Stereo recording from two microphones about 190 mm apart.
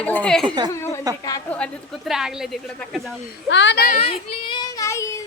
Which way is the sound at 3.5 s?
70° left (ahead or behind).